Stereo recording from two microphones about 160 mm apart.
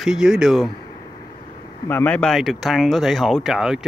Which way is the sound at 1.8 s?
10° left (ahead or behind).